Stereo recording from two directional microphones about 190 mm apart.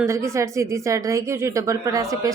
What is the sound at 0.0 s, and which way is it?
A woman's voice, 15° right (ahead or behind).